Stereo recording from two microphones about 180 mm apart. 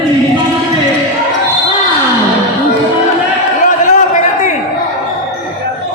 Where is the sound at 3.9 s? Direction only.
45° left (ahead or behind).